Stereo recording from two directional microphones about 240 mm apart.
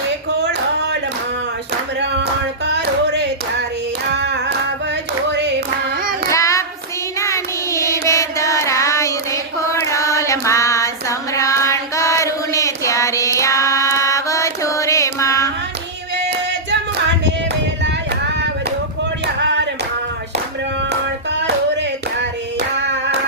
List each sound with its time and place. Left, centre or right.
2.6 s music: right
5.3 s clapping: right
6.2 s child singing: centre
8.0 s a sound: centre
16.1 s singing: right
17.8 s a sound: right
20.9 s hands: right